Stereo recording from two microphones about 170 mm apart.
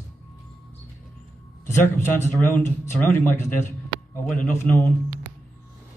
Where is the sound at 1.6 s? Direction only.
15° left (ahead or behind).